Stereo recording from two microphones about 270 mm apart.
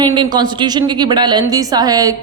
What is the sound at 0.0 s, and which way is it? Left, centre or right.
A woman's voice, centre.